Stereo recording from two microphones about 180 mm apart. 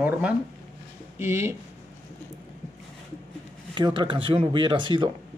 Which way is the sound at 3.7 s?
25° right (ahead or behind).